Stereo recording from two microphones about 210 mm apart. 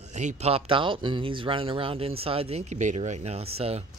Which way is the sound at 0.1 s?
35° right (ahead or behind).